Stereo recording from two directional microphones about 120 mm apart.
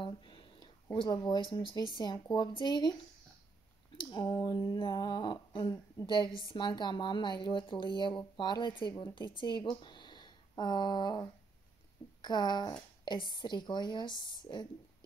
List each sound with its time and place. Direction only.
0.0 s a sound: 40° left (ahead or behind)
0.9 s speech: 35° left (ahead or behind)
4.0 s a woman's voice: 35° left (ahead or behind)